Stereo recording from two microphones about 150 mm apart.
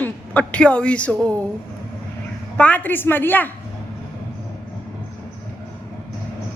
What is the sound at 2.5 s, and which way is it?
Speech, 10° left (ahead or behind).